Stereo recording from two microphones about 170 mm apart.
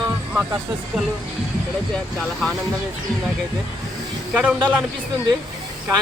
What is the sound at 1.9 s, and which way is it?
Speech, 5° left (ahead or behind).